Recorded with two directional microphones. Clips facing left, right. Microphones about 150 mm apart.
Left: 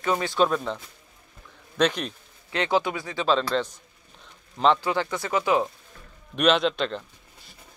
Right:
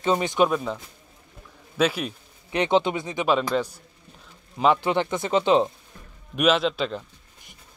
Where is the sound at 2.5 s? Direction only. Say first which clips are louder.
Right 3 dB; 20° right (ahead or behind).